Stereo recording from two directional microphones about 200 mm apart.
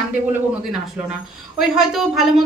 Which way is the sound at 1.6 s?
Centre (ahead or behind).